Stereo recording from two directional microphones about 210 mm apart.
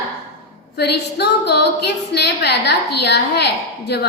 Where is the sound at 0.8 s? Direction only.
50° left (ahead or behind).